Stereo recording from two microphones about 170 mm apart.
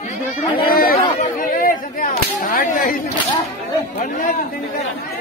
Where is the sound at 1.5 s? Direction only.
55° left (ahead or behind).